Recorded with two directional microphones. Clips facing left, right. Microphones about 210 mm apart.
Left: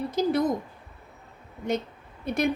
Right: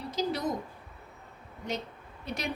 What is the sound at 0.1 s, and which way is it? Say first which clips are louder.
Speech: left 7 dB; 55° left (ahead or behind).